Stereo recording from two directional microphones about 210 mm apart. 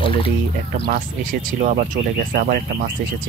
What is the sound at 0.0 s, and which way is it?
Speech, 25° left (ahead or behind).